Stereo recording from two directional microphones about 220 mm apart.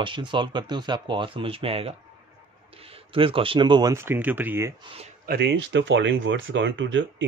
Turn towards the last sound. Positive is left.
turn(degrees=-55)  # may be behind; listen again after turning